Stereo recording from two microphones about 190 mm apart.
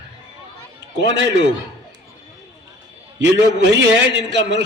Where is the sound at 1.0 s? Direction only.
70° right (ahead or behind).